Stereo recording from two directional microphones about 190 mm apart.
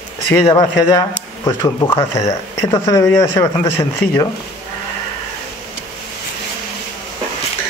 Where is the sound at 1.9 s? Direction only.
30° left (ahead or behind).